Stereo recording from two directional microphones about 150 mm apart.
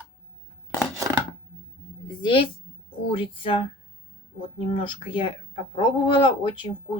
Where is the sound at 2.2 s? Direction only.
35° left (ahead or behind).